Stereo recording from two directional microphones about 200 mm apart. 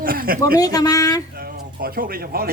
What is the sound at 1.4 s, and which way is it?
Speech, 50° right (ahead or behind).